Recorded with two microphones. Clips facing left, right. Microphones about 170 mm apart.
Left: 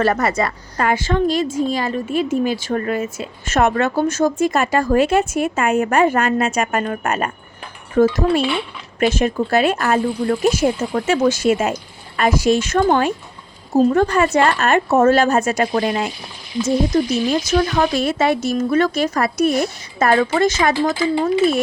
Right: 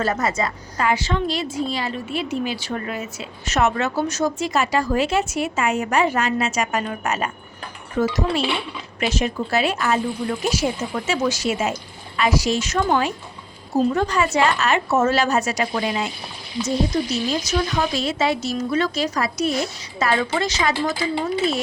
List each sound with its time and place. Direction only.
0.0 s a woman's voice: 65° left (ahead or behind)